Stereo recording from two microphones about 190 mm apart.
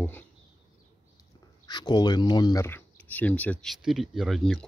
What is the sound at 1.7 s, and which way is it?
Speech, 20° left (ahead or behind).